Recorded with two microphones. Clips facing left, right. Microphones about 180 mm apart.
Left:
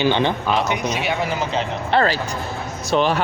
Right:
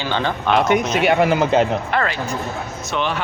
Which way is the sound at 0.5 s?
50° right (ahead or behind).